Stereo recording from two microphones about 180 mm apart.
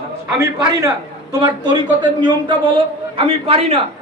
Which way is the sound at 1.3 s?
20° right (ahead or behind).